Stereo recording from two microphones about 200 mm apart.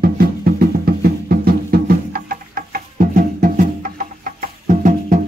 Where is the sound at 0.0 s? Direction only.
50° right (ahead or behind).